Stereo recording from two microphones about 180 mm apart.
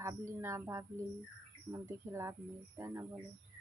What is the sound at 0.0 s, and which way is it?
Speech, 15° right (ahead or behind).